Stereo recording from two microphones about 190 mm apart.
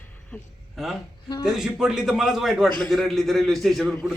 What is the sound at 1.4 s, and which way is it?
A man's voice, centre (ahead or behind).